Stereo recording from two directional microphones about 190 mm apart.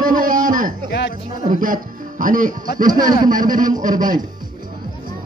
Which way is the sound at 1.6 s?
45° right (ahead or behind).